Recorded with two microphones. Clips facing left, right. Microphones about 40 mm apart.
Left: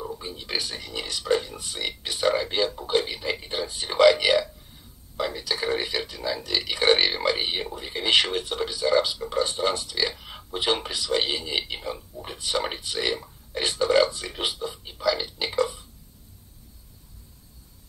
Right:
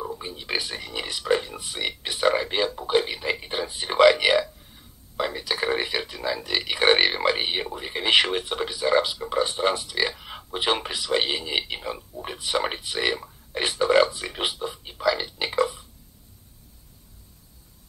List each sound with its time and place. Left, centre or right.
0.2 s speech: centre